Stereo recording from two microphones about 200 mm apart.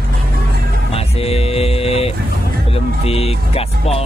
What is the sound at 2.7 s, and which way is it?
Speech, 30° left (ahead or behind).